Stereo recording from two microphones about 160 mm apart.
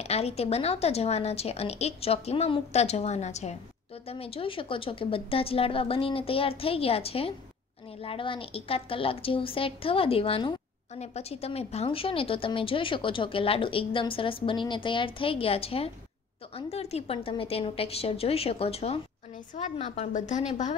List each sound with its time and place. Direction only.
0.0 s a woman's voice: 40° left (ahead or behind)